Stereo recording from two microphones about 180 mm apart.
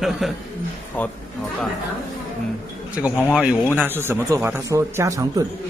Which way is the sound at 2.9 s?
5° right (ahead or behind).